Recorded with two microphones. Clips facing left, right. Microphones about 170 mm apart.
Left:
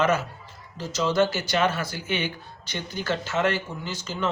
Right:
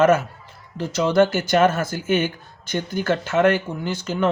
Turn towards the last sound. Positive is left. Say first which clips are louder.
# right 7 dB
turn(degrees=-55)  # may be behind; listen again after turning